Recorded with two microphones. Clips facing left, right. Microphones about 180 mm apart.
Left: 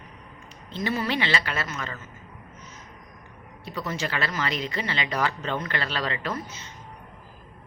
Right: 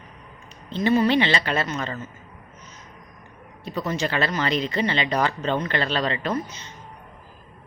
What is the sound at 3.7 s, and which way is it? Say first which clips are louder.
Speech: right 5 dB; 25° right (ahead or behind).